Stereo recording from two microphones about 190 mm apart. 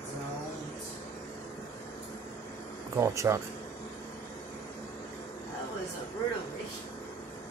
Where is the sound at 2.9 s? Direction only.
15° right (ahead or behind).